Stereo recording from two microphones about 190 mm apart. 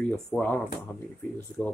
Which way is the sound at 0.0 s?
5° left (ahead or behind).